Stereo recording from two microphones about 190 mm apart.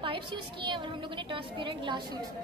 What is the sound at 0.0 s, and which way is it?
A woman's voice, 25° right (ahead or behind).